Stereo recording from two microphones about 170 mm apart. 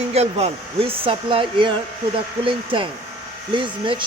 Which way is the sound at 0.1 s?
40° right (ahead or behind).